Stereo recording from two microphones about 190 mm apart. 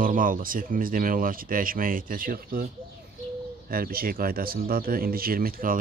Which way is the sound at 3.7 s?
50° right (ahead or behind).